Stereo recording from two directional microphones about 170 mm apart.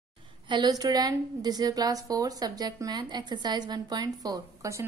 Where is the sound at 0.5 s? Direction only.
25° right (ahead or behind).